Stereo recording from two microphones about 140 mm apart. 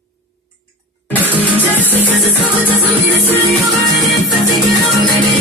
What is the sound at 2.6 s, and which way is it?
Music, 15° left (ahead or behind).